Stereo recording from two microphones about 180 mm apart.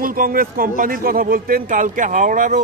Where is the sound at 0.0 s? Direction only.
50° right (ahead or behind).